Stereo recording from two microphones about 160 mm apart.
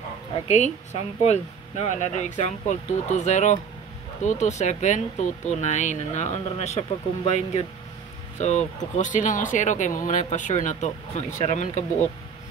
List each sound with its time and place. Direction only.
0.5 s speech: 45° left (ahead or behind)